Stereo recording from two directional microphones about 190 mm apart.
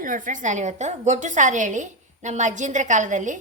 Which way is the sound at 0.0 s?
45° right (ahead or behind).